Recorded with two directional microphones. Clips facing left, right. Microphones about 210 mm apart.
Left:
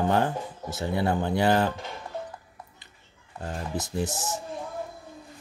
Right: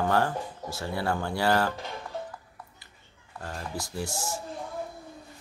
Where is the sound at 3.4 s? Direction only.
20° left (ahead or behind).